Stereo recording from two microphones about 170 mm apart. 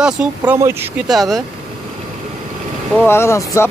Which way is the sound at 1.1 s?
Centre (ahead or behind).